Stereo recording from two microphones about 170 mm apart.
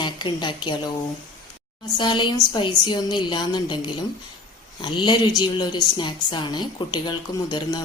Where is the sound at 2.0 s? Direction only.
30° left (ahead or behind).